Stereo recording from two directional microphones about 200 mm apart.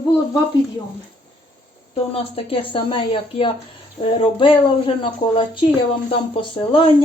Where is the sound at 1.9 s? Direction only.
25° left (ahead or behind).